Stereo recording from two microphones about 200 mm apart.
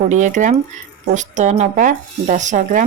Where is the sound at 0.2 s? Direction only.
40° right (ahead or behind).